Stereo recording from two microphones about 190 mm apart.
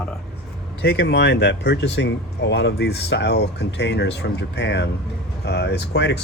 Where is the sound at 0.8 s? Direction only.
60° left (ahead or behind).